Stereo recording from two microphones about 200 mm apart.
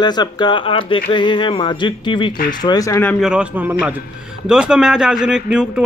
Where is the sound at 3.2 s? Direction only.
5° right (ahead or behind).